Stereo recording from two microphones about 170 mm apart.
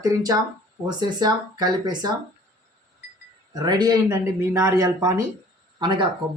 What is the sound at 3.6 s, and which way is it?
Speech, 20° right (ahead or behind).